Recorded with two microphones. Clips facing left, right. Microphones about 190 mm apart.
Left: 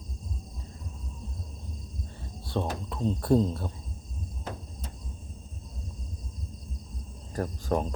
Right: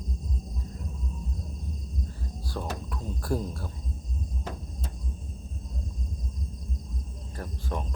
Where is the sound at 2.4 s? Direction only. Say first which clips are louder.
Left 4 dB; 25° left (ahead or behind).